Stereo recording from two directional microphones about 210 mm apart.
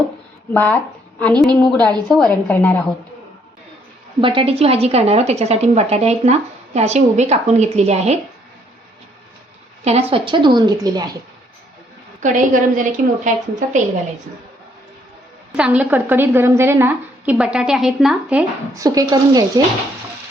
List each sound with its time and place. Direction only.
0.5 s a woman's voice: 10° left (ahead or behind)
4.2 s a woman's voice: 25° right (ahead or behind)
9.8 s a woman's voice: 30° right (ahead or behind)
12.2 s a woman's voice: 35° right (ahead or behind)
15.5 s a woman's voice: 5° right (ahead or behind)
18.7 s a woman's voice: 15° right (ahead or behind)